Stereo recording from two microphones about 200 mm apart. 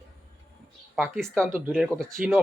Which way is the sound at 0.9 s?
Centre (ahead or behind).